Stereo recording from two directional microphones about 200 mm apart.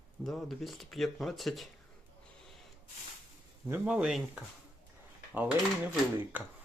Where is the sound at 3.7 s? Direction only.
5° right (ahead or behind).